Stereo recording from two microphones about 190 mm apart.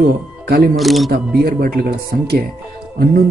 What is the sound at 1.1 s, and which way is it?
Speech, 55° right (ahead or behind).